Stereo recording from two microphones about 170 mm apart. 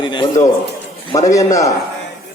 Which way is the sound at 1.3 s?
20° left (ahead or behind).